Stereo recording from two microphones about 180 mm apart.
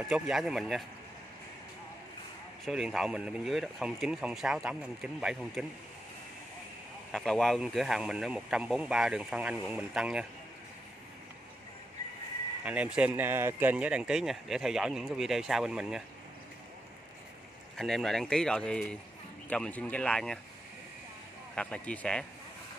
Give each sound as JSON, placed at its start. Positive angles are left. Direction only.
{"t": 0.1, "sound": "speech", "side_deg": 0}
{"t": 2.6, "sound": "speech", "side_deg": 0}
{"t": 7.1, "sound": "speech", "side_deg": 5}
{"t": 12.6, "sound": "speech", "side_deg": -5}
{"t": 17.7, "sound": "speech", "side_deg": 0}
{"t": 21.5, "sound": "speech", "side_deg": 5}